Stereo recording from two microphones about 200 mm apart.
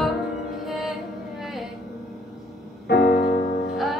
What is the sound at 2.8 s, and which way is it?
Music, 55° left (ahead or behind).